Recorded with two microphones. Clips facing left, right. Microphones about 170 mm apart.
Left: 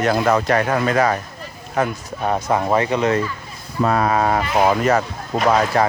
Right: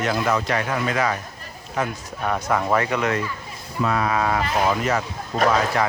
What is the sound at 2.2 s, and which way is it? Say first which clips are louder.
Speech: left 3 dB; 30° left (ahead or behind).